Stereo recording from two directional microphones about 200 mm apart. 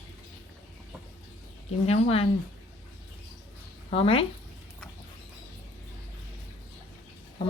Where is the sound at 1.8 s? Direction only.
30° left (ahead or behind).